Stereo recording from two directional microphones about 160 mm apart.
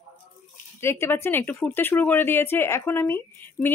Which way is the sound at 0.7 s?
15° left (ahead or behind).